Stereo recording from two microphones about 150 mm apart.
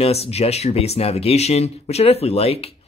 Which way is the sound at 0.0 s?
45° left (ahead or behind).